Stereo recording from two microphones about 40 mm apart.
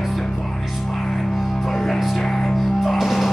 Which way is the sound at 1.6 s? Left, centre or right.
Centre.